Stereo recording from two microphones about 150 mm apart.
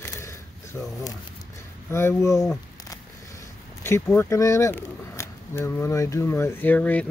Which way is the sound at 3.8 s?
15° left (ahead or behind).